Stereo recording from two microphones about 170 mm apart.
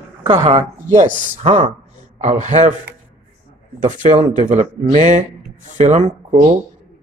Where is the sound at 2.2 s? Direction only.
45° right (ahead or behind).